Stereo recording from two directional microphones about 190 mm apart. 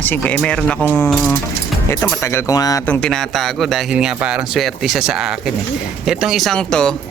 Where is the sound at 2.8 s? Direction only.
5° left (ahead or behind).